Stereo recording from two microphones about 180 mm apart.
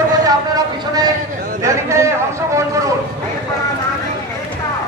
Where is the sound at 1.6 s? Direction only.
15° right (ahead or behind).